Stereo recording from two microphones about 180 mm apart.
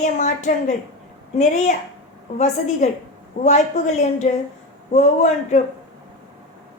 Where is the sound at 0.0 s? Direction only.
40° left (ahead or behind).